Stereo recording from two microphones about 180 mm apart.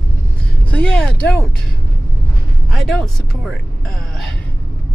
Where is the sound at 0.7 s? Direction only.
5° left (ahead or behind).